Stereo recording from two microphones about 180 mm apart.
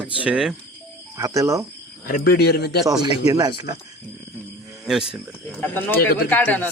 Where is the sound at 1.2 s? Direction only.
15° right (ahead or behind).